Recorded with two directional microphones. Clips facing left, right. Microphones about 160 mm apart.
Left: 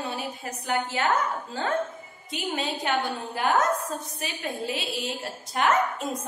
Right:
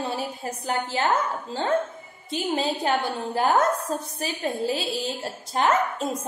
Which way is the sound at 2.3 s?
35° right (ahead or behind).